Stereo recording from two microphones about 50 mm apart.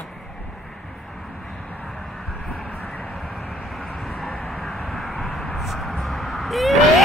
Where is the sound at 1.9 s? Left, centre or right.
Centre.